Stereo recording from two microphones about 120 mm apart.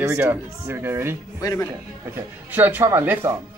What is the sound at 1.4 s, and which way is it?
Speech, 30° left (ahead or behind).